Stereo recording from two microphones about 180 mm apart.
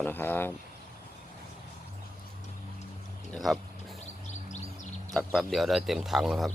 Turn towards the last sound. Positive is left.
turn(degrees=0)  # may be behind; listen again after turning